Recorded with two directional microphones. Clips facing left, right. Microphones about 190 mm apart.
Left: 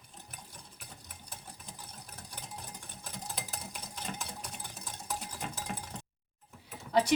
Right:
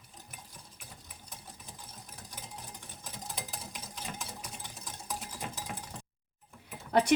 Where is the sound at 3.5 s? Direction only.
5° right (ahead or behind).